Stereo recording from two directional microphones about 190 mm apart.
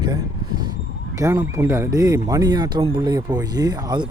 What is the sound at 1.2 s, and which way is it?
A man's voice, 15° right (ahead or behind).